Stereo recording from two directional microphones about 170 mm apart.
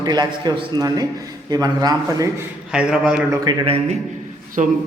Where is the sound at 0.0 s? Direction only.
25° right (ahead or behind).